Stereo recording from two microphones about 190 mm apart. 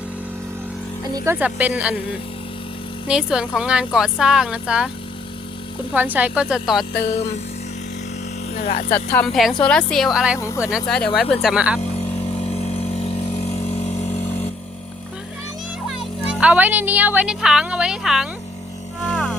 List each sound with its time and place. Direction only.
1.0 s speech: 15° right (ahead or behind)
3.1 s speech: 5° right (ahead or behind)
5.9 s speech: 10° right (ahead or behind)
7.0 s a sound: 35° left (ahead or behind)
8.5 s a sound: 35° left (ahead or behind)
9.1 s speech: centre (ahead or behind)
10.3 s speech: 15° left (ahead or behind)
10.6 s speech: 5° right (ahead or behind)
12.5 s vehicle: 35° left (ahead or behind)
16.2 s speech: 5° right (ahead or behind)
19.0 s music: 5° left (ahead or behind)